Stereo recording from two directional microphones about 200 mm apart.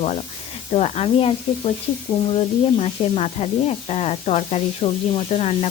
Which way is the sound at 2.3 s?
30° left (ahead or behind).